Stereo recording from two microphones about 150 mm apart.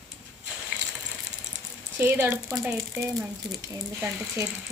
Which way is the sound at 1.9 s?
10° right (ahead or behind).